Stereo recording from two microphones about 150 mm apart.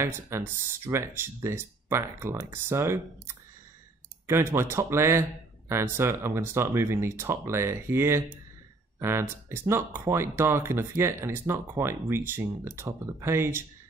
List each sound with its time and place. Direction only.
0.0 s speech: 15° right (ahead or behind)